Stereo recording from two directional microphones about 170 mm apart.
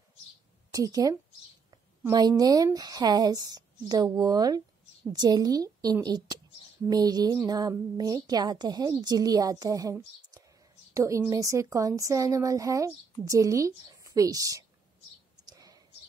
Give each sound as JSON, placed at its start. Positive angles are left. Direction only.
{"t": 0.7, "sound": "a woman's voice", "side_deg": -20}